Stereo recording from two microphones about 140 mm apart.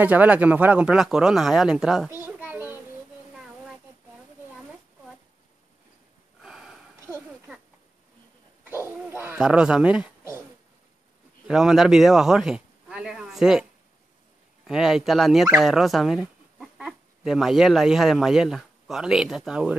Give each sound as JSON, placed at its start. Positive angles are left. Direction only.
{"t": 0.0, "sound": "speech", "side_deg": -10}
{"t": 2.0, "sound": "a sound", "side_deg": -15}
{"t": 6.4, "sound": "sniff", "side_deg": -5}
{"t": 8.6, "sound": "bird", "side_deg": -15}
{"t": 11.4, "sound": "speech", "side_deg": -5}
{"t": 14.7, "sound": "speech", "side_deg": -5}